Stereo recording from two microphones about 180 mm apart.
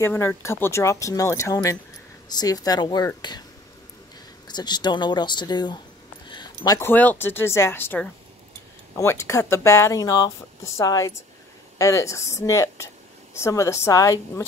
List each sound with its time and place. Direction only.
0.0 s speech: 15° left (ahead or behind)
4.5 s speech: 25° left (ahead or behind)